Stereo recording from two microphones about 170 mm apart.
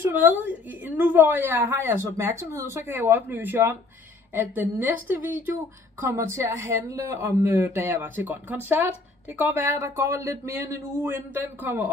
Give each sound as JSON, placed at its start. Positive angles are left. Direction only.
{"t": 0.0, "sound": "a woman's voice", "side_deg": -10}